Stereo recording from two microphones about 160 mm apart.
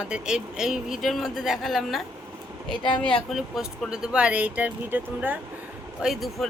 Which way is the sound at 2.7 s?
30° left (ahead or behind).